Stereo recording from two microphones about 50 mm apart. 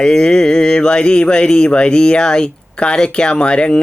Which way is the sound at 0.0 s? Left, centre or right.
Centre.